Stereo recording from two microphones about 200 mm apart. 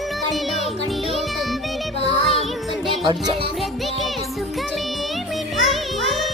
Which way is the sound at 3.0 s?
25° right (ahead or behind).